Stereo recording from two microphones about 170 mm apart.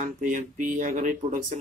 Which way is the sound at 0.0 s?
50° right (ahead or behind).